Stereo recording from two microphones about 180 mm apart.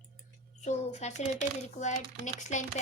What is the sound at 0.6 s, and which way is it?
A child's voice, 40° left (ahead or behind).